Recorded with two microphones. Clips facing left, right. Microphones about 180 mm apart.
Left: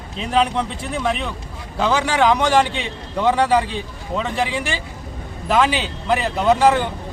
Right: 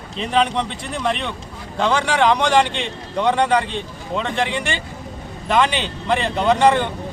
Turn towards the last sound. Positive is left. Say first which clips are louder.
# even
turn(degrees=5)  # may be behind; listen again after turning